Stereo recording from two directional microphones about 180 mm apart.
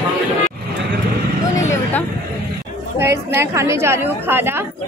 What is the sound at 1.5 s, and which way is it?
Vehicle, 15° left (ahead or behind).